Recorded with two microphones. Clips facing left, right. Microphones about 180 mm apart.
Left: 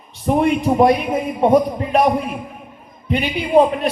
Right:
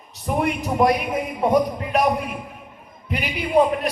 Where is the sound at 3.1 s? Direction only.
25° left (ahead or behind).